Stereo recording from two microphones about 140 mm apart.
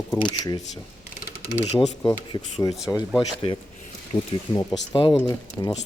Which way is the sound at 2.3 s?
30° left (ahead or behind).